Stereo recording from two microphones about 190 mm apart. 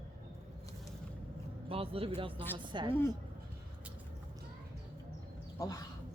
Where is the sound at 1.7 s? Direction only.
30° right (ahead or behind).